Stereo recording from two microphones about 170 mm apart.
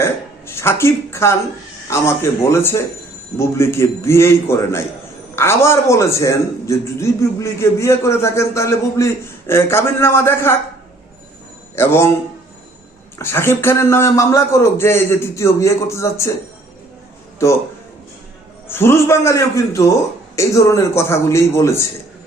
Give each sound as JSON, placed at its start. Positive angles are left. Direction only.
{"t": 0.0, "sound": "a sound", "side_deg": 15}
{"t": 1.9, "sound": "a man's voice", "side_deg": 15}
{"t": 11.8, "sound": "a man's voice", "side_deg": 15}
{"t": 13.1, "sound": "a man's voice", "side_deg": 15}
{"t": 17.4, "sound": "a man's voice", "side_deg": 15}
{"t": 18.7, "sound": "a man's voice", "side_deg": 15}